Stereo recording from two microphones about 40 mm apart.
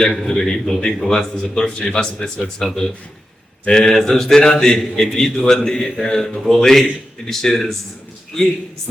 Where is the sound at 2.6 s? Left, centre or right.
Centre.